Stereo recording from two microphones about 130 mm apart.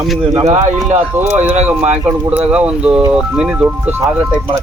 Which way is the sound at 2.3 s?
10° right (ahead or behind).